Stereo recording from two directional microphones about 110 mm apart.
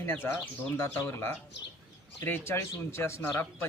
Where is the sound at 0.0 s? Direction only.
20° left (ahead or behind).